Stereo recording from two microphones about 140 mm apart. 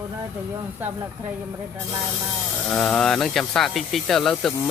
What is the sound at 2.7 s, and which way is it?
Speech, 5° left (ahead or behind).